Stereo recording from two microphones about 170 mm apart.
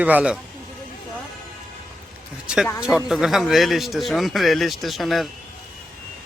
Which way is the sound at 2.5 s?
5° right (ahead or behind).